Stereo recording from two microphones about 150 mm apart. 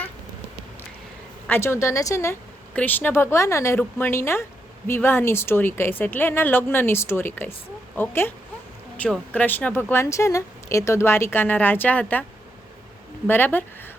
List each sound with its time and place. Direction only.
1.5 s a woman's voice: 15° left (ahead or behind)
13.2 s speech: 15° left (ahead or behind)